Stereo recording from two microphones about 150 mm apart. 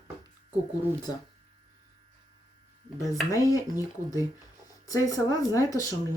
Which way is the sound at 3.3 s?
25° left (ahead or behind).